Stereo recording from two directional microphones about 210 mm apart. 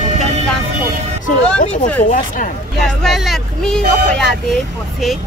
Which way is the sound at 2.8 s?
Centre (ahead or behind).